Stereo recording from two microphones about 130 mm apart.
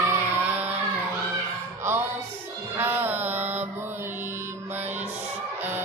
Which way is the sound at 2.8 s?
15° right (ahead or behind).